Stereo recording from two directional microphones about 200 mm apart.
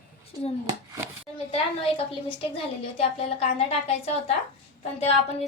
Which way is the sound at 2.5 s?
30° left (ahead or behind).